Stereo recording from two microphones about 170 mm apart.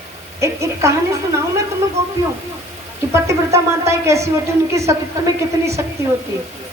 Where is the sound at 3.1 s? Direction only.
15° right (ahead or behind).